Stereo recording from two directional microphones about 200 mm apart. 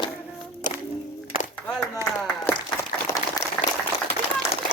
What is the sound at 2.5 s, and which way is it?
Applause, 10° left (ahead or behind).